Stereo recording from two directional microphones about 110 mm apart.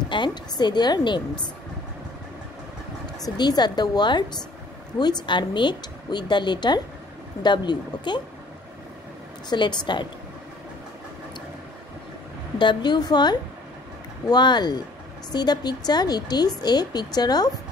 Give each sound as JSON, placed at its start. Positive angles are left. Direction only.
{"t": 0.1, "sound": "speech", "side_deg": 45}
{"t": 3.2, "sound": "a woman's voice", "side_deg": 40}
{"t": 9.5, "sound": "a woman's voice", "side_deg": 45}
{"t": 12.5, "sound": "speech", "side_deg": 45}